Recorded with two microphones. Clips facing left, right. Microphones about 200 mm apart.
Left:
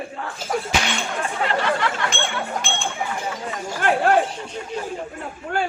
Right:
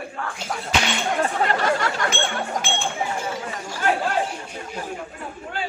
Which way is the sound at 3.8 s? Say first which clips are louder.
Left 5 dB; 60° left (ahead or behind).